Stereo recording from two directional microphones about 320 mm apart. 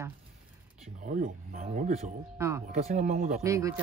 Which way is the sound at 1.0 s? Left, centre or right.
Right.